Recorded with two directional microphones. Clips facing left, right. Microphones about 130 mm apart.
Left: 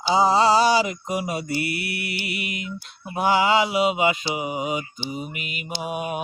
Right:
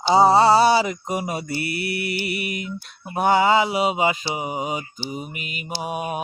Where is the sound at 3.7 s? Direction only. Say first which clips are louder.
Even; 40° right (ahead or behind).